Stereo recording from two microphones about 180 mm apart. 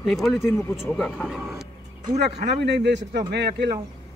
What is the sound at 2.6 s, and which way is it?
Speech, 70° right (ahead or behind).